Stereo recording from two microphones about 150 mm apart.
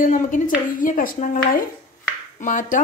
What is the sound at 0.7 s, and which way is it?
Dishes, 65° left (ahead or behind).